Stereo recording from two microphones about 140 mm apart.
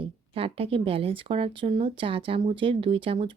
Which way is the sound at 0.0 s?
40° right (ahead or behind).